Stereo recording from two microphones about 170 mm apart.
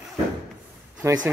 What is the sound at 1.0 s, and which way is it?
Speech, 15° right (ahead or behind).